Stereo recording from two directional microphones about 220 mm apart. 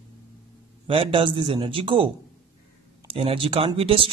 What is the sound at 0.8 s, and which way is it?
A man's voice, 25° right (ahead or behind).